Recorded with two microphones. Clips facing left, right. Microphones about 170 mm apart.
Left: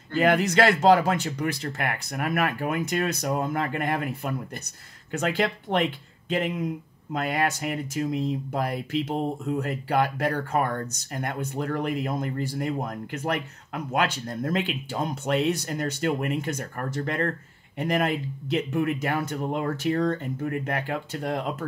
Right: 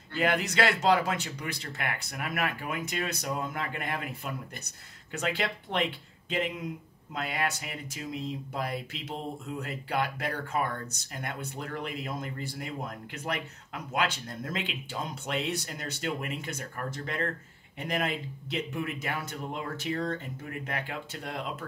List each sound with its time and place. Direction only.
0.1 s speech: 45° left (ahead or behind)
7.2 s speech: 50° left (ahead or behind)